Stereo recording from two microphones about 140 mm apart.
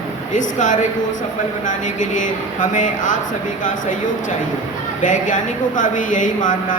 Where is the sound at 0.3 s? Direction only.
65° left (ahead or behind).